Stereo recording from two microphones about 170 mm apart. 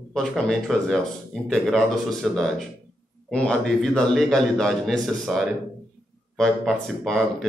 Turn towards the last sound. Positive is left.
turn(degrees=0)  # may be behind; listen again after turning